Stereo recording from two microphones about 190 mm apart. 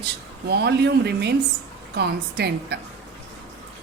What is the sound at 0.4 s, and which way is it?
Speech, 60° right (ahead or behind).